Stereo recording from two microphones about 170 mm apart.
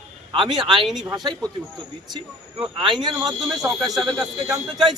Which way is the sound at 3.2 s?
Centre (ahead or behind).